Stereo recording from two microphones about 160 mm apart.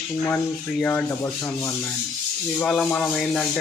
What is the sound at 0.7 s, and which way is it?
Speech, 10° left (ahead or behind).